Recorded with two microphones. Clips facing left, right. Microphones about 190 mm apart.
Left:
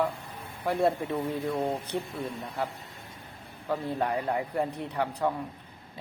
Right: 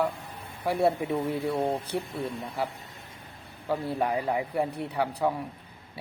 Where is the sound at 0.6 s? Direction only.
10° right (ahead or behind).